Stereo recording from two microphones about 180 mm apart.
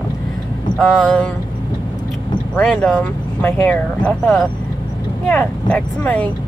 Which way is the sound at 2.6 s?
5° left (ahead or behind).